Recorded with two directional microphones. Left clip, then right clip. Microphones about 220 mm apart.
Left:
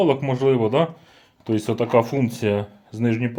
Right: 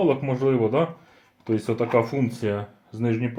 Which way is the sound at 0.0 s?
40° left (ahead or behind).